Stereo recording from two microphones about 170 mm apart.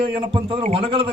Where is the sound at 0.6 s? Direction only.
35° right (ahead or behind).